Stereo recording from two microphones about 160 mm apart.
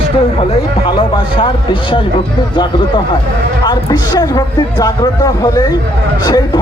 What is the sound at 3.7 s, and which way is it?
Speech, 25° left (ahead or behind).